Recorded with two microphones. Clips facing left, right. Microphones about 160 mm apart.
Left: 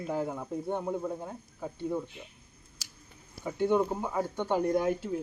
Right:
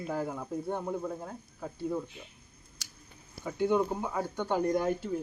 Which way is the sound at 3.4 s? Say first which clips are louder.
Left 1 dB; centre (ahead or behind).